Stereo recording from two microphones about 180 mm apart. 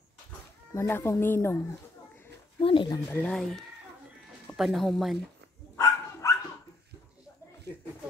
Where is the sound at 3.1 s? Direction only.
5° left (ahead or behind).